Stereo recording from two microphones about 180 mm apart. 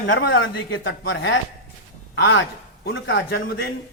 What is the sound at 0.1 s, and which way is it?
A man's voice, 90° left.